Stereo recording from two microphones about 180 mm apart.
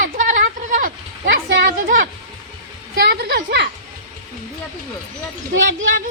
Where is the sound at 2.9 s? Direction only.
65° right (ahead or behind).